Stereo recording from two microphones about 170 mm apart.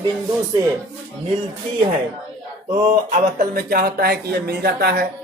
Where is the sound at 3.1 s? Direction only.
60° right (ahead or behind).